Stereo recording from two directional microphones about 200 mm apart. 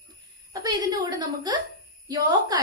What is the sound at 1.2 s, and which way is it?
A woman's voice, 20° right (ahead or behind).